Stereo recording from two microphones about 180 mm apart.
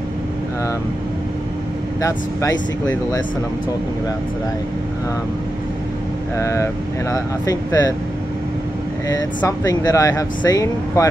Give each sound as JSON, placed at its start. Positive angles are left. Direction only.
{"t": 2.0, "sound": "speech", "side_deg": 15}
{"t": 6.3, "sound": "speech", "side_deg": 15}
{"t": 9.1, "sound": "speech", "side_deg": 20}